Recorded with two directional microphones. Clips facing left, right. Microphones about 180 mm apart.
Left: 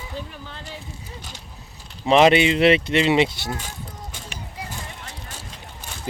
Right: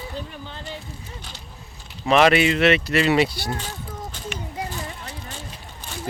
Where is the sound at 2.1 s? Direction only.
25° left (ahead or behind).